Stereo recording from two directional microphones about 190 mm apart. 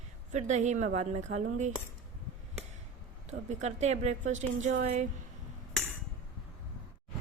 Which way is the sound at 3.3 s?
35° right (ahead or behind).